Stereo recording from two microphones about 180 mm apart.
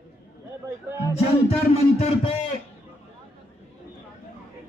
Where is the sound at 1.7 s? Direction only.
35° left (ahead or behind).